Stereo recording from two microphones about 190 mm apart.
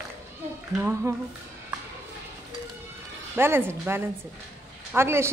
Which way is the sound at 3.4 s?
10° right (ahead or behind).